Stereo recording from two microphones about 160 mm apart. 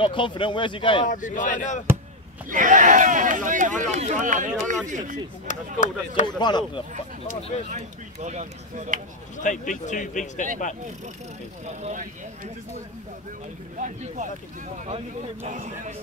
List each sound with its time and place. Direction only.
0.0 s speech: 30° left (ahead or behind)
1.0 s speech: 55° left (ahead or behind)
2.5 s speech: 55° right (ahead or behind)
5.5 s speech: 50° left (ahead or behind)
6.2 s speech: 25° left (ahead or behind)
7.7 s speech: 45° right (ahead or behind)
9.4 s speech: 50° left (ahead or behind)
11.6 s speech: 45° right (ahead or behind)
13.7 s speech: 50° right (ahead or behind)
15.4 s speech: 50° right (ahead or behind)